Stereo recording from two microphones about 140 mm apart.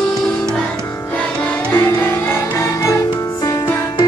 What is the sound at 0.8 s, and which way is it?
Music, 15° left (ahead or behind).